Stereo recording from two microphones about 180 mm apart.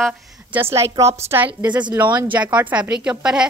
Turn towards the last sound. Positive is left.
turn(degrees=-5)  # may be behind; listen again after turning